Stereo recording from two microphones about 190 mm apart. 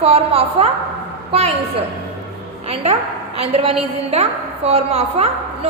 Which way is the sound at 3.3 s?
30° right (ahead or behind).